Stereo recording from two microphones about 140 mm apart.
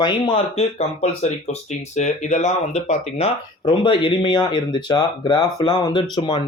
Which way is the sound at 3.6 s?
35° left (ahead or behind).